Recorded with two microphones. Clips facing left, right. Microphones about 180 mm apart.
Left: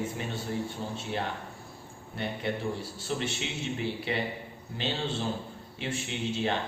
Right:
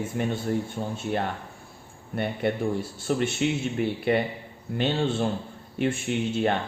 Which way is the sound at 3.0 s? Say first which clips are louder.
Right 9 dB; 55° right (ahead or behind).